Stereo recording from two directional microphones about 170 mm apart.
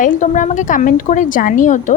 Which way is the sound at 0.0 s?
45° left (ahead or behind).